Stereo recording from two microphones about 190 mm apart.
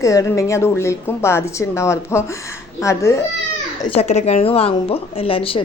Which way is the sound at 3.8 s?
30° left (ahead or behind).